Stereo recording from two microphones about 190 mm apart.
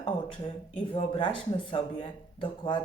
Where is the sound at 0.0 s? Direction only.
30° left (ahead or behind).